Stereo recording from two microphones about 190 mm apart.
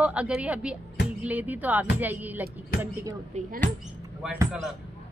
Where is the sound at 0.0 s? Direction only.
5° right (ahead or behind).